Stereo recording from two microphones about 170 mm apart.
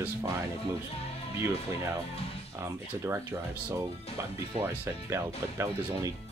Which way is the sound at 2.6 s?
15° right (ahead or behind).